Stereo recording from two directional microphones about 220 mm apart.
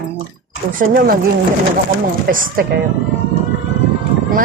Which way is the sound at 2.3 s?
40° right (ahead or behind).